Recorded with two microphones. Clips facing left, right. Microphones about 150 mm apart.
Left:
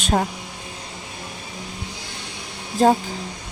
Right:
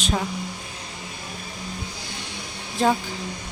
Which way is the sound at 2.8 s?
35° left (ahead or behind).